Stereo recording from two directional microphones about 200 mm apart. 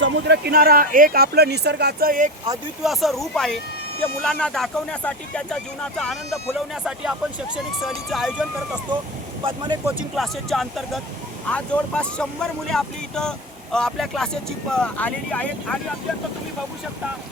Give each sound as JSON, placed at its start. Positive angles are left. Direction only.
{"t": 0.0, "sound": "speech", "side_deg": -55}
{"t": 2.8, "sound": "speech", "side_deg": 0}
{"t": 9.4, "sound": "speech", "side_deg": -25}
{"t": 9.8, "sound": "speech", "side_deg": 0}